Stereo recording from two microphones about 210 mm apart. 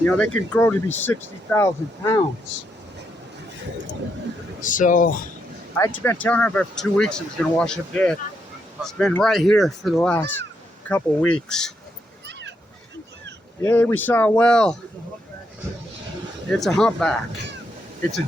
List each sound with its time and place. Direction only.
0.0 s speech: 5° left (ahead or behind)
4.6 s speech: 40° left (ahead or behind)
5.7 s speech: 10° left (ahead or behind)
13.6 s speech: 10° left (ahead or behind)
16.5 s speech: centre (ahead or behind)